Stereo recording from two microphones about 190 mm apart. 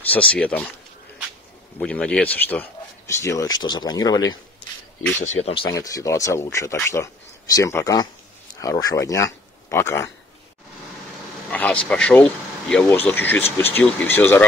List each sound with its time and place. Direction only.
0.1 s speech: 5° left (ahead or behind)
1.8 s speech: 5° left (ahead or behind); by 4.4 s 20° left (ahead or behind)
5.2 s speech: 35° left (ahead or behind); by 10.1 s 15° left (ahead or behind)
11.5 s speech: 5° left (ahead or behind)